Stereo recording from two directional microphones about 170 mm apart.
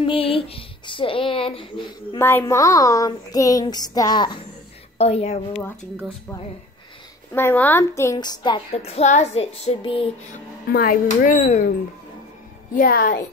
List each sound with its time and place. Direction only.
0.0 s speech: 30° left (ahead or behind)
2.1 s speech: 15° left (ahead or behind)
4.9 s speech: 40° left (ahead or behind)
7.3 s a woman's voice: 10° left (ahead or behind)
8.7 s speech: 40° left (ahead or behind)
10.7 s speech: 60° left (ahead or behind)
11.3 s speech: 45° left (ahead or behind)
12.7 s speech: 55° left (ahead or behind)